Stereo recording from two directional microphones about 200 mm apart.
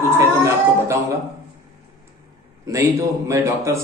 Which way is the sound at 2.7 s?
15° right (ahead or behind).